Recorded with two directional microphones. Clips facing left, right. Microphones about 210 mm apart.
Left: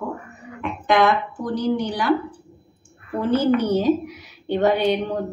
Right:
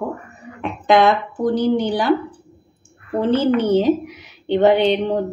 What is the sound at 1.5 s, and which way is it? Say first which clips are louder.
Speech: right 3 dB; 30° right (ahead or behind).